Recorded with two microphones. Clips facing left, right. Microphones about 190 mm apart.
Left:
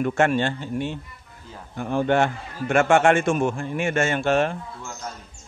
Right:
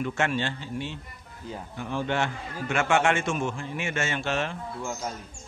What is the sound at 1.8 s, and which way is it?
A man's voice, 50° left (ahead or behind).